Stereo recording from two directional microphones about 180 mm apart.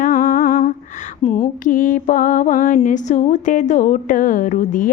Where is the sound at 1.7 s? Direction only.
50° left (ahead or behind).